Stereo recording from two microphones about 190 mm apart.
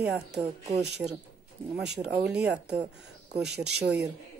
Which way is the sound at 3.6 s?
60° right (ahead or behind).